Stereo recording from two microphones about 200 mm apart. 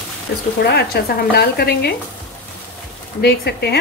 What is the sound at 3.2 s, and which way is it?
Speech, 55° left (ahead or behind).